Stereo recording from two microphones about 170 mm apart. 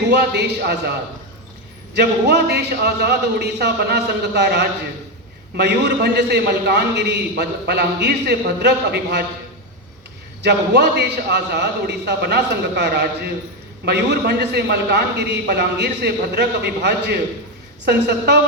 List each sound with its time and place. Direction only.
0.1 s a man's voice: 80° right
2.0 s a man's voice: 80° right
10.4 s a man's voice: 80° right